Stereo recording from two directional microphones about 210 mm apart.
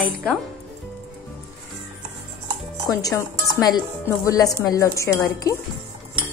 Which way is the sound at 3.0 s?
15° left (ahead or behind).